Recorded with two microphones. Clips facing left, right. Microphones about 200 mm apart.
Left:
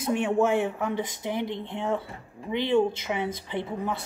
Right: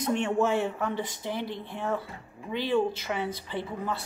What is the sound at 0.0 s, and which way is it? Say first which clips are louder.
A woman's voice: left 2 dB; 10° left (ahead or behind).